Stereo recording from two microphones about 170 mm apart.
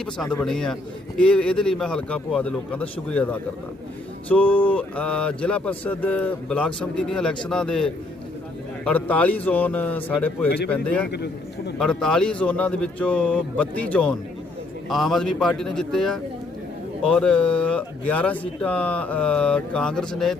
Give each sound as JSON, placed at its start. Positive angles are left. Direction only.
{"t": 0.0, "sound": "a man's voice", "side_deg": 5}
{"t": 11.1, "sound": "a man's voice", "side_deg": 80}
{"t": 11.8, "sound": "a man's voice", "side_deg": 5}